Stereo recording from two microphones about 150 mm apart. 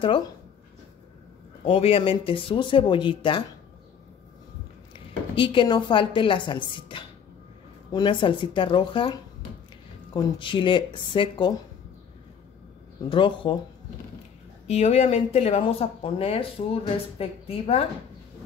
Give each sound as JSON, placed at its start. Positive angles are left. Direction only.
{"t": 1.6, "sound": "speech", "side_deg": 40}
{"t": 5.3, "sound": "speech", "side_deg": 35}
{"t": 13.1, "sound": "speech", "side_deg": 35}
{"t": 14.7, "sound": "speech", "side_deg": 45}